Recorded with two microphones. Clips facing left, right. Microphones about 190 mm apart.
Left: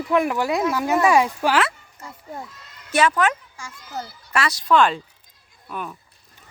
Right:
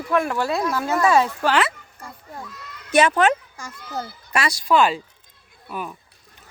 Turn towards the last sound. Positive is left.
turn(degrees=-5)  # may be behind; listen again after turning